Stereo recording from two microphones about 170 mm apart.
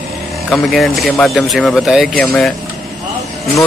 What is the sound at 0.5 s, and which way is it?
Speech, centre (ahead or behind).